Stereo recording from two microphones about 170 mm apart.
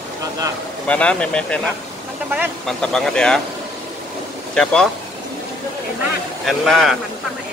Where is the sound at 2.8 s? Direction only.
5° left (ahead or behind).